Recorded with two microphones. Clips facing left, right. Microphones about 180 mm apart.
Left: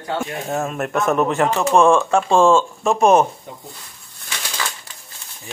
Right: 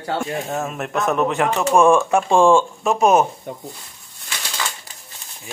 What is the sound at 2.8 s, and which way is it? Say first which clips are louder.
Speech: left 3 dB; 5° right (ahead or behind).